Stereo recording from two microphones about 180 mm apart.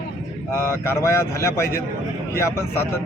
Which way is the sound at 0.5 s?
15° left (ahead or behind).